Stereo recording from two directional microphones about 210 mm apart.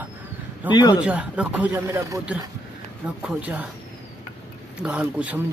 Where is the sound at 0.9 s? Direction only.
5° right (ahead or behind).